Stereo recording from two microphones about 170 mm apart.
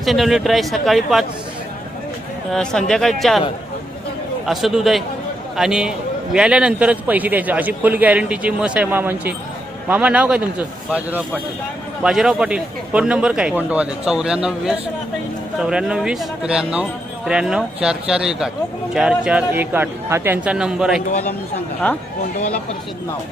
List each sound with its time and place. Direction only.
0.0 s a man's voice: centre (ahead or behind)
2.5 s a man's voice: 5° left (ahead or behind)
4.4 s a man's voice: centre (ahead or behind)
12.0 s a man's voice: centre (ahead or behind)
21.1 s a man's voice: 40° left (ahead or behind)